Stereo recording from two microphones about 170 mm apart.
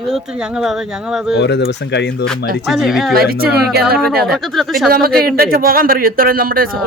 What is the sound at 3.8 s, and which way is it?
Speech, 65° right (ahead or behind).